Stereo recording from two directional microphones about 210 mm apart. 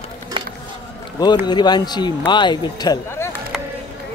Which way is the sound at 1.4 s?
20° left (ahead or behind).